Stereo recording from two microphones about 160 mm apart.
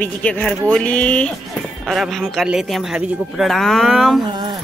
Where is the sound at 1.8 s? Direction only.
Centre (ahead or behind).